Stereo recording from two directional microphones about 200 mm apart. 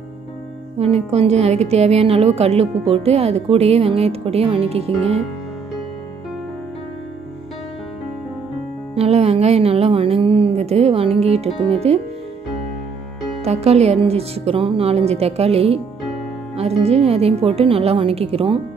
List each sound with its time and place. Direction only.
0.7 s speech: 30° right (ahead or behind)
8.9 s speech: 30° right (ahead or behind)
13.4 s speech: 30° right (ahead or behind)